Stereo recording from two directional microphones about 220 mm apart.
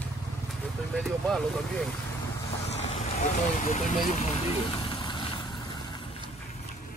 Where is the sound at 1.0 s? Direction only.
Centre (ahead or behind).